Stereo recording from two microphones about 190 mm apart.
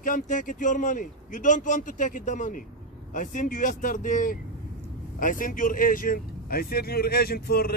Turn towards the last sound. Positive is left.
turn(degrees=55)  # may be behind; listen again after turning